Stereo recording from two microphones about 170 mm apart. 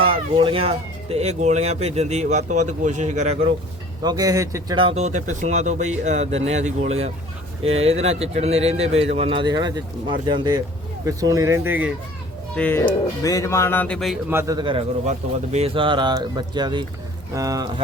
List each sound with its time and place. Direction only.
0.0 s speech: 30° right (ahead or behind)
4.0 s speech: 20° right (ahead or behind)
4.9 s speech: 45° right (ahead or behind); by 11.9 s 10° right (ahead or behind)
12.5 s speech: 10° left (ahead or behind)
14.3 s speech: 15° right (ahead or behind)